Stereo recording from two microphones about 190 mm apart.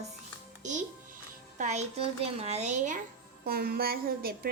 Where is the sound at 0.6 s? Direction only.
40° right (ahead or behind).